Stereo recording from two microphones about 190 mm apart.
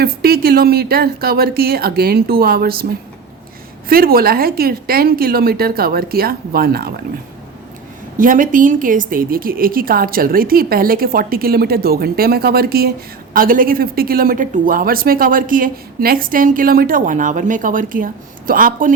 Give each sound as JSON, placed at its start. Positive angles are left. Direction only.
{"t": 0.0, "sound": "speech", "side_deg": -55}
{"t": 3.8, "sound": "speech", "side_deg": -50}
{"t": 8.2, "sound": "speech", "side_deg": -45}